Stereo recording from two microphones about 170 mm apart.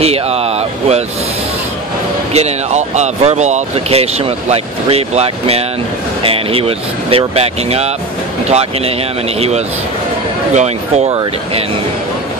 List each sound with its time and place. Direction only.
0.0 s a sound: 35° right (ahead or behind)
2.3 s speech: 40° right (ahead or behind)
10.5 s speech: 40° right (ahead or behind)
11.1 s speech: 25° right (ahead or behind)